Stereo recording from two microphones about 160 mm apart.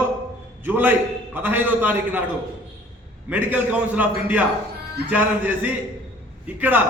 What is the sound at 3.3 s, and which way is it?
A man's voice, 10° right (ahead or behind).